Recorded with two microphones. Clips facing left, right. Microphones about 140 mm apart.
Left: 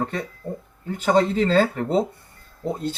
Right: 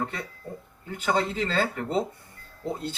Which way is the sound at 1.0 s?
40° left (ahead or behind).